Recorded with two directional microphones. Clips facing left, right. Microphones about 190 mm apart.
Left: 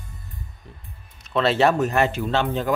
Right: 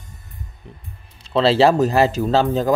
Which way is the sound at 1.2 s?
30° right (ahead or behind).